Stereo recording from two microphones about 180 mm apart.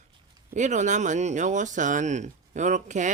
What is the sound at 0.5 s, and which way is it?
Speech, 40° right (ahead or behind).